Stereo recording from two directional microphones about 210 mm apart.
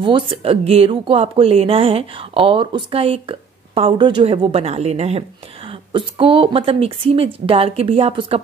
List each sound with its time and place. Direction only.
0.0 s speech: 25° right (ahead or behind)